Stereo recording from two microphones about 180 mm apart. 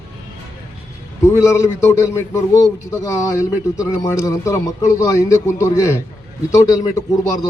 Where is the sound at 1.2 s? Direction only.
15° left (ahead or behind).